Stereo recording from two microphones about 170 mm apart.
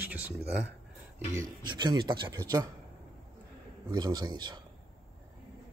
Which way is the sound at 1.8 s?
25° right (ahead or behind).